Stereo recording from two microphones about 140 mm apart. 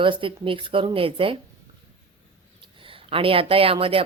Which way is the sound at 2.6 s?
40° right (ahead or behind).